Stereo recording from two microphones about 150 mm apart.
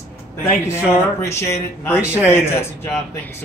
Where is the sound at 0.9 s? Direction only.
20° left (ahead or behind).